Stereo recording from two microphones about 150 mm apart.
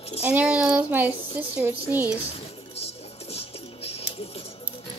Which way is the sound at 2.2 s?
40° left (ahead or behind).